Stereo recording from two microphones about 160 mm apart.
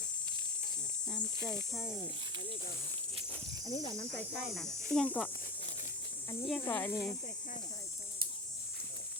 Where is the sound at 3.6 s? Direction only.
25° left (ahead or behind).